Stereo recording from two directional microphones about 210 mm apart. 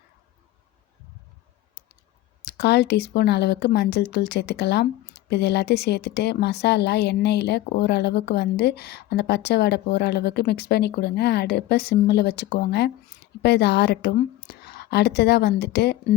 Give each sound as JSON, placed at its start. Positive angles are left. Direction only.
{"t": 2.4, "sound": "speech", "side_deg": 50}